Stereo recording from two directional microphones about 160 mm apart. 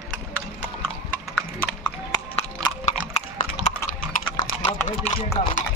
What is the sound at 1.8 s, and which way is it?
Clip-clop, 30° left (ahead or behind).